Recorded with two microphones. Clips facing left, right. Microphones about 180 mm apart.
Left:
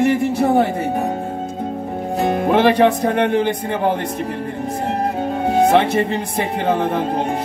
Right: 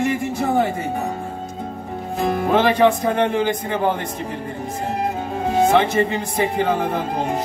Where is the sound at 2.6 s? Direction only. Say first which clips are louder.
Left 2 dB; 60° left (ahead or behind).